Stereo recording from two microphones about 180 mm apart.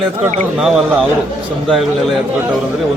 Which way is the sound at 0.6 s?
5° right (ahead or behind).